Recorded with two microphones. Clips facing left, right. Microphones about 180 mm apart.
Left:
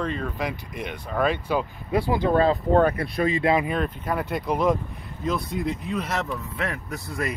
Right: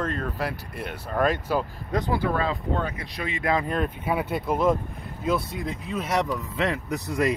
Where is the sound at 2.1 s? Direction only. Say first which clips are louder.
Left 3 dB; 20° left (ahead or behind).